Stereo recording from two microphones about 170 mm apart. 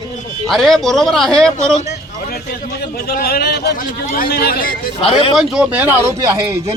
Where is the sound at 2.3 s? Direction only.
70° left (ahead or behind).